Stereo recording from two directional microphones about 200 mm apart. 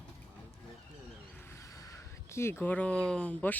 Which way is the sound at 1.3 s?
10° left (ahead or behind).